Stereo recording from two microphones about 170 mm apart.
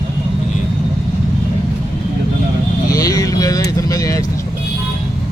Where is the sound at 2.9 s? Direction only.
20° left (ahead or behind).